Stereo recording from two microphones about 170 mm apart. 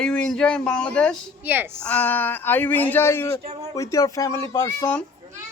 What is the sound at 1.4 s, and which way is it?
Speech, 10° right (ahead or behind).